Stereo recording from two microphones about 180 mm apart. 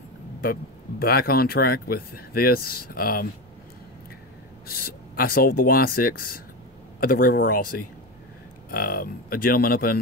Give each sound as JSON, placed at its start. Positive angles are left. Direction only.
{"t": 0.4, "sound": "speech", "side_deg": 55}
{"t": 4.6, "sound": "speech", "side_deg": 55}